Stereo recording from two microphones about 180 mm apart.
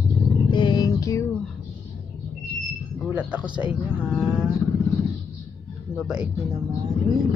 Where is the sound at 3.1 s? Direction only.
5° right (ahead or behind).